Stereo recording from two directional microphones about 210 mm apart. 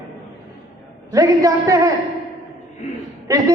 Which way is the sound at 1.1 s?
15° right (ahead or behind).